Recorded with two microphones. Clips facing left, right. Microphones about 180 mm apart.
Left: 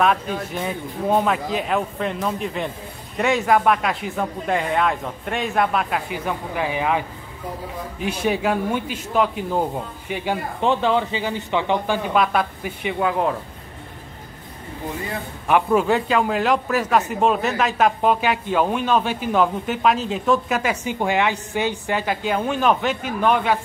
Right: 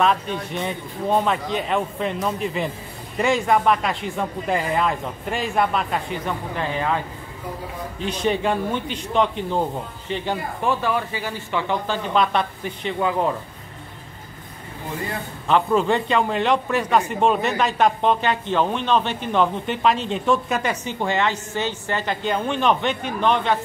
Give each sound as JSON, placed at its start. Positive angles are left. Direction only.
{"t": 0.5, "sound": "a man's voice", "side_deg": 0}
{"t": 8.0, "sound": "a man's voice", "side_deg": 10}
{"t": 10.6, "sound": "speech", "side_deg": 20}
{"t": 12.1, "sound": "a man's voice", "side_deg": 5}
{"t": 15.4, "sound": "a man's voice", "side_deg": 10}